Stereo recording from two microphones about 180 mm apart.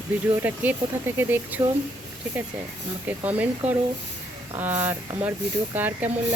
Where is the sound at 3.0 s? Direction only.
10° right (ahead or behind).